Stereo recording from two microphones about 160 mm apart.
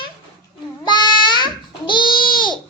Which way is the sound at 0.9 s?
30° left (ahead or behind).